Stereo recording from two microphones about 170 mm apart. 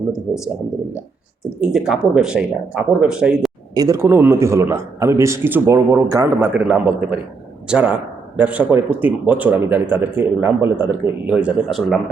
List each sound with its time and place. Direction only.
0.3 s a man's voice: 5° right (ahead or behind)
1.6 s speech: 5° right (ahead or behind)
3.8 s a man's voice: 20° right (ahead or behind); by 11.9 s 5° right (ahead or behind)